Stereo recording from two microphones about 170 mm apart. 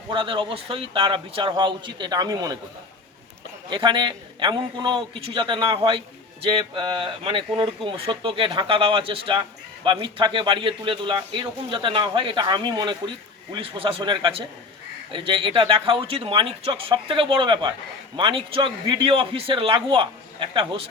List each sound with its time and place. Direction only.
0.1 s speech: 30° right (ahead or behind)
3.7 s speech: 30° right (ahead or behind)